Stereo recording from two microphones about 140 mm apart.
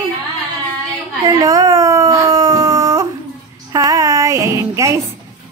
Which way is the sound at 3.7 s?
25° right (ahead or behind).